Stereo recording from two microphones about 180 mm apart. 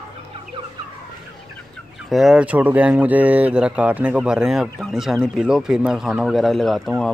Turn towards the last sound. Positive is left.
turn(degrees=0)  # may be behind; listen again after turning